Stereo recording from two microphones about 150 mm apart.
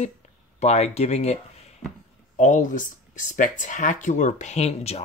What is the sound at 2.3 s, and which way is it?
Speech, 55° left (ahead or behind).